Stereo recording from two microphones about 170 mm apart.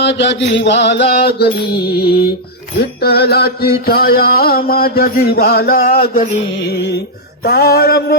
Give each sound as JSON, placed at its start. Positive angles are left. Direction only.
{"t": 0.0, "sound": "mantra", "side_deg": 90}
{"t": 2.7, "sound": "music", "side_deg": 70}
{"t": 6.7, "sound": "music", "side_deg": 80}
{"t": 7.4, "sound": "music", "side_deg": 65}